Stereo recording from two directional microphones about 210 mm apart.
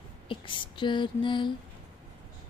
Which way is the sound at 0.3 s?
25° left (ahead or behind).